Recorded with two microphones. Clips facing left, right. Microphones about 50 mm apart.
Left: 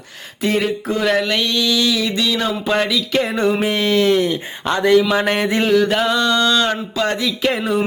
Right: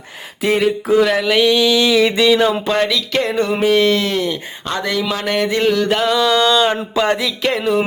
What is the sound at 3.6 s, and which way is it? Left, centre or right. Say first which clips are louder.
Speech: right 2 dB; centre.